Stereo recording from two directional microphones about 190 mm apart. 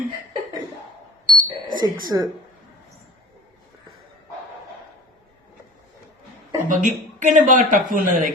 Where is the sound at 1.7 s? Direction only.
20° right (ahead or behind).